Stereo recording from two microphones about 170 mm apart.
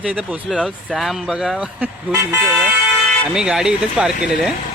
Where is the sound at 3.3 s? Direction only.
5° right (ahead or behind).